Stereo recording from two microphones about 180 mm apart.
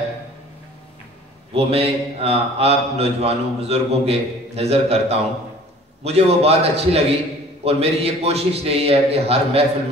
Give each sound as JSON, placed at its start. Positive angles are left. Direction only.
{"t": 1.5, "sound": "mantra", "side_deg": -35}